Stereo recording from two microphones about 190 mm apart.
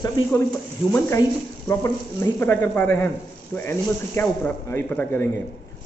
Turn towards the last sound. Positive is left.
turn(degrees=10)  # may be behind; listen again after turning